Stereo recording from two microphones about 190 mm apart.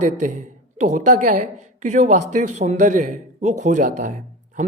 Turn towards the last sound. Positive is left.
turn(degrees=-40)  # may be behind; listen again after turning